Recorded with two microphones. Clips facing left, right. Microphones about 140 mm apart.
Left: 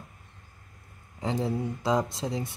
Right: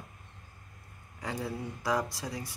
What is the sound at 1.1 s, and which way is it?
Speech, 25° left (ahead or behind).